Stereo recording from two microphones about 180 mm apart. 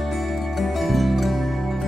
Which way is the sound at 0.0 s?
Centre (ahead or behind).